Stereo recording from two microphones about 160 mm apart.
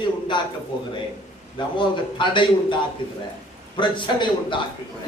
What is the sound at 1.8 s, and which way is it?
A man's voice, 30° left (ahead or behind).